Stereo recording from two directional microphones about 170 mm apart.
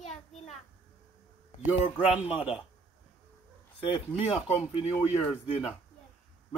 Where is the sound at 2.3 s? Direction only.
5° right (ahead or behind).